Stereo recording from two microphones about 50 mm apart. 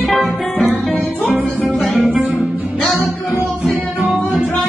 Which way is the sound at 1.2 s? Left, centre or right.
Right.